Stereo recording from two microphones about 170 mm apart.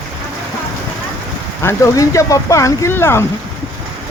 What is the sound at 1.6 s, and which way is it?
Speech, 15° left (ahead or behind).